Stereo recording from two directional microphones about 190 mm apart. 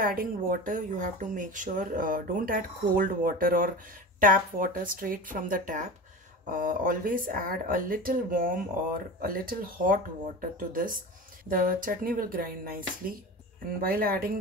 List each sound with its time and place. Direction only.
0.0 s speech: 50° right (ahead or behind)
13.7 s speech: 50° right (ahead or behind)